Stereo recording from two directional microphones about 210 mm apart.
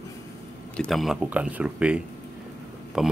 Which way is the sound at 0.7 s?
Centre (ahead or behind).